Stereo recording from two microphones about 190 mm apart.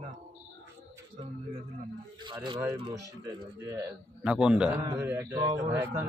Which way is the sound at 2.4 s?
25° right (ahead or behind).